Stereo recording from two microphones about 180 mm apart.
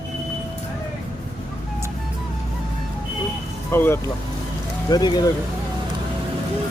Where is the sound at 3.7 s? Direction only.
15° left (ahead or behind).